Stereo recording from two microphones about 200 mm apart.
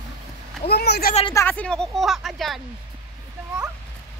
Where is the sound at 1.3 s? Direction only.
10° left (ahead or behind).